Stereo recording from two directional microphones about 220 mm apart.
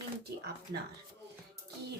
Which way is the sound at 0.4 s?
45° right (ahead or behind).